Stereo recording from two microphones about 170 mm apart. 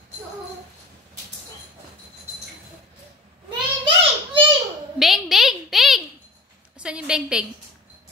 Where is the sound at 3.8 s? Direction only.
30° right (ahead or behind).